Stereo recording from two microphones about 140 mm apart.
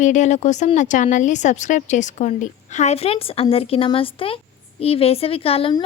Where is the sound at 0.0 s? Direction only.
60° left (ahead or behind).